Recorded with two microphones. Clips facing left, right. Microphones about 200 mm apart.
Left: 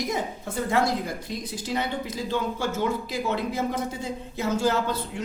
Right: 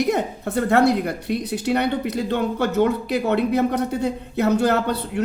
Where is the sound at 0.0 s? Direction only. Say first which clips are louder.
Right 7 dB; 65° right (ahead or behind).